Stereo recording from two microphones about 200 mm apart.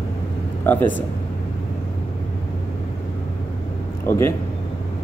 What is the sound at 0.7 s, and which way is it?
Speech, 10° left (ahead or behind).